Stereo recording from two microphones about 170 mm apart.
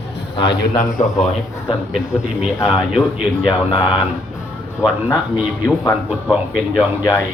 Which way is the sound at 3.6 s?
30° left (ahead or behind).